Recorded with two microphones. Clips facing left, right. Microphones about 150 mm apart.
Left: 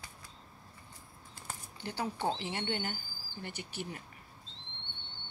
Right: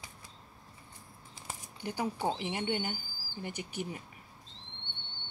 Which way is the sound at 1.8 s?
10° right (ahead or behind).